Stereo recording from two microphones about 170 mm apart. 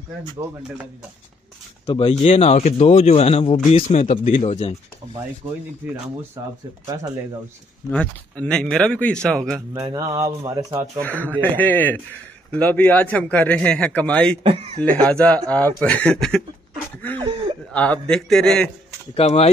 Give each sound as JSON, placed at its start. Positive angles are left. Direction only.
{"t": 1.9, "sound": "speech", "side_deg": 30}
{"t": 6.4, "sound": "speech", "side_deg": -20}
{"t": 7.9, "sound": "speech", "side_deg": 5}
{"t": 9.8, "sound": "speech", "side_deg": -20}
{"t": 11.0, "sound": "speech", "side_deg": 10}
{"t": 14.4, "sound": "speech", "side_deg": -35}
{"t": 14.8, "sound": "speech", "side_deg": 5}
{"t": 17.7, "sound": "speech", "side_deg": 10}
{"t": 19.1, "sound": "speech", "side_deg": 35}